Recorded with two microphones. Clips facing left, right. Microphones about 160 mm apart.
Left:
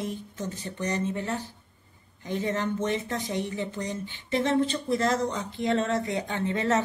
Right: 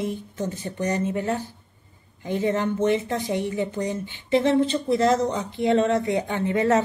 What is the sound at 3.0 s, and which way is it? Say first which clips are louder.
Speech: right 5 dB; 40° right (ahead or behind).